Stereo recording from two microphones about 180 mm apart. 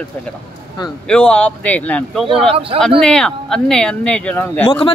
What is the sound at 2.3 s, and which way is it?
Speech, 30° right (ahead or behind).